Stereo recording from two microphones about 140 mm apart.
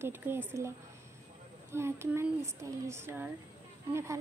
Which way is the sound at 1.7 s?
20° right (ahead or behind).